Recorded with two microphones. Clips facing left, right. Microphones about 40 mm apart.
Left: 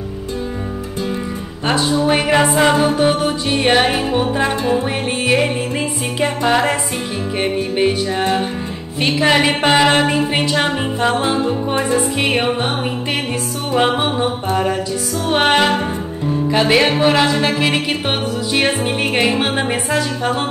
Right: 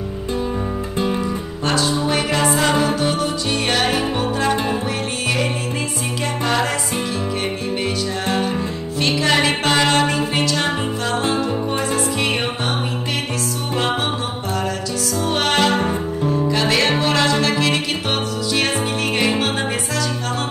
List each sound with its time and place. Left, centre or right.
1.7 s a capella: centre
3.0 s music: left
6.2 s music: left
15.2 s music: left
19.1 s music: left